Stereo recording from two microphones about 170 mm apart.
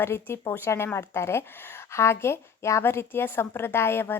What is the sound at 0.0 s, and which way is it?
A woman's voice, 15° left (ahead or behind).